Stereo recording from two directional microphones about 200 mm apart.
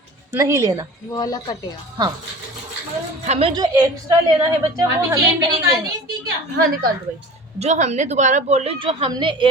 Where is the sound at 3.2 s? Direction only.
30° right (ahead or behind).